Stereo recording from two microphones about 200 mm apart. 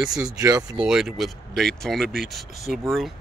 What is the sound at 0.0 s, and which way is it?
Speech, 5° right (ahead or behind).